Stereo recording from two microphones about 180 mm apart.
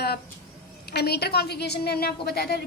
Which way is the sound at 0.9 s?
65° left (ahead or behind).